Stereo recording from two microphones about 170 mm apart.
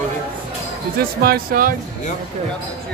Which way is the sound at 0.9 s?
60° right (ahead or behind).